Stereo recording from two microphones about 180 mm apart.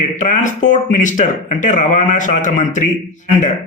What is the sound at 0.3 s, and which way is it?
A man's voice, 45° left (ahead or behind).